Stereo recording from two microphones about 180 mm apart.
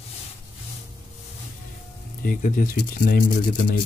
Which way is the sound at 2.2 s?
50° left (ahead or behind).